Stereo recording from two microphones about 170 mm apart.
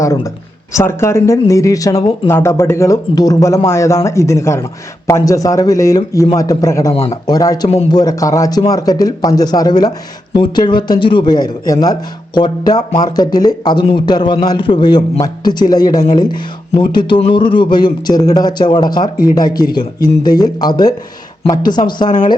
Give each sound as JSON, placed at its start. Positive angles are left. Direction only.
{"t": 0.7, "sound": "a man's voice", "side_deg": 15}
{"t": 6.9, "sound": "speech", "side_deg": 35}
{"t": 7.3, "sound": "a man's voice", "side_deg": 20}